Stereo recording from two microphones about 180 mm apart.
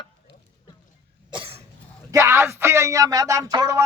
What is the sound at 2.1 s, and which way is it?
Speech, 15° right (ahead or behind).